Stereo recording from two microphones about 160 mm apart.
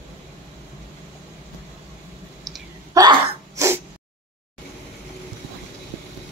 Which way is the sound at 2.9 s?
20° right (ahead or behind).